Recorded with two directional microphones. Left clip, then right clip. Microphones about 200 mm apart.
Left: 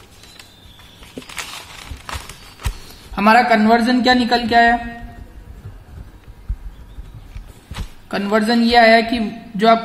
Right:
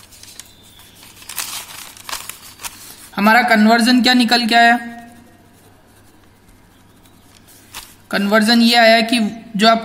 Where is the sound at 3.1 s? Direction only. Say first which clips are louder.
Even; 40° right (ahead or behind).